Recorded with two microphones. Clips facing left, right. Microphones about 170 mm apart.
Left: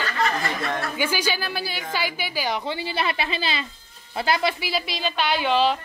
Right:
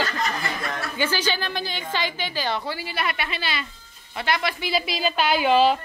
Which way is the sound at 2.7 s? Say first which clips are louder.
Left 2 dB; 30° left (ahead or behind).